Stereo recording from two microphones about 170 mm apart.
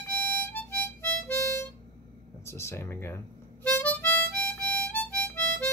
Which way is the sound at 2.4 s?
15° left (ahead or behind).